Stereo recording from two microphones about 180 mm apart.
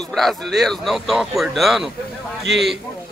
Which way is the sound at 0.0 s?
Centre (ahead or behind).